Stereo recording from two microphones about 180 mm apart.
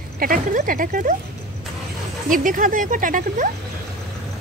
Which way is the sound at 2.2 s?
50° right (ahead or behind).